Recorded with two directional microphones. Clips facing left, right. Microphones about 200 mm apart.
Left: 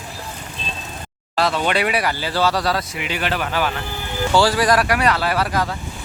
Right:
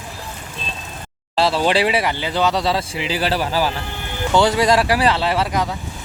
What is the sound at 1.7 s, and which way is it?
Speech, 30° right (ahead or behind).